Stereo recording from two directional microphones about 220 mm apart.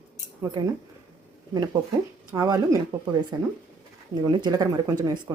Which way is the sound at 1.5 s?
20° right (ahead or behind).